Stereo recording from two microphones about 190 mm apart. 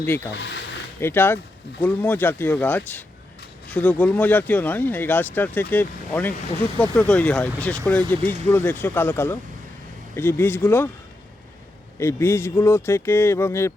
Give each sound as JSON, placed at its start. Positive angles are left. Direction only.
{"t": 0.0, "sound": "speech", "side_deg": 10}
{"t": 0.3, "sound": "speech", "side_deg": 65}
{"t": 1.0, "sound": "speech", "side_deg": 10}
{"t": 11.9, "sound": "speech", "side_deg": 15}